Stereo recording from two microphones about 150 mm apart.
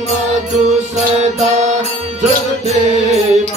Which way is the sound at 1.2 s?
50° right (ahead or behind).